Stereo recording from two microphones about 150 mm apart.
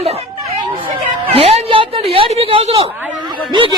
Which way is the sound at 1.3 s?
40° right (ahead or behind).